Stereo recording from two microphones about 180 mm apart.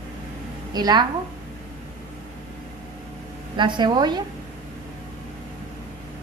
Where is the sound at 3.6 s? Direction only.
25° right (ahead or behind).